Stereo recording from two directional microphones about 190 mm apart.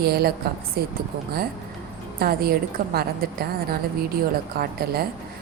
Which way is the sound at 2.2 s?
50° right (ahead or behind).